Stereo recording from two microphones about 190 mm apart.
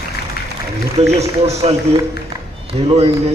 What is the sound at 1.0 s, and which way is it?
A man's voice, 35° right (ahead or behind).